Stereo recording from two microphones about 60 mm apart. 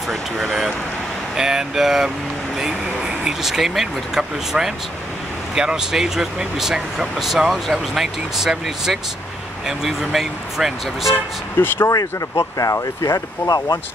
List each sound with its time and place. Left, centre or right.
0.1 s speech: centre
11.5 s speech: left
11.9 s speech: left